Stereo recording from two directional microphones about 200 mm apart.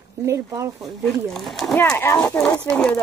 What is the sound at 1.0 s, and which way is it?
Speech, centre (ahead or behind).